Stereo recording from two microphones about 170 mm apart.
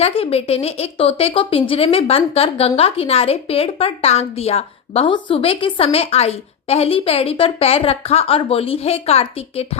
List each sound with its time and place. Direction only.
0.0 s a woman's voice: 35° left (ahead or behind)